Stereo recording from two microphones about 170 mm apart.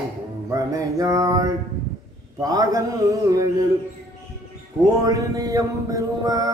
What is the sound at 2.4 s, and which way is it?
Mantra, 20° right (ahead or behind).